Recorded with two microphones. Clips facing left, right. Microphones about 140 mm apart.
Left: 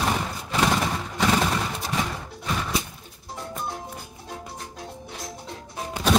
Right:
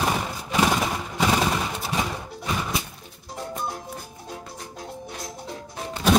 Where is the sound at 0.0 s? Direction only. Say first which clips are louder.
Right 1 dB; 5° right (ahead or behind).